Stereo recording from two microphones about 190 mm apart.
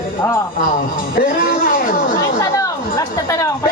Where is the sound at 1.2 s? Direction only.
45° left (ahead or behind).